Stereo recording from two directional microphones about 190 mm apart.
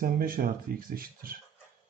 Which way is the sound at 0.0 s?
50° right (ahead or behind).